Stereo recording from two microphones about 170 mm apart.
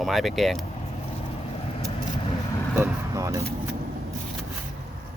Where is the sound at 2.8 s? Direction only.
20° right (ahead or behind).